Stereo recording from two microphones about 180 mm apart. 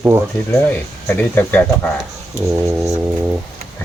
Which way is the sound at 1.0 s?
10° left (ahead or behind).